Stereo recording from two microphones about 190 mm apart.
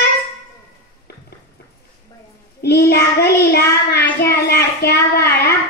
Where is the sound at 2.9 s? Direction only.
60° left (ahead or behind).